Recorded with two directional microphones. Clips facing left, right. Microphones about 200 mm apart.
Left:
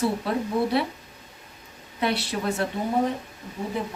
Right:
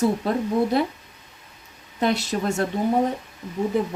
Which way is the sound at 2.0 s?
45° right (ahead or behind).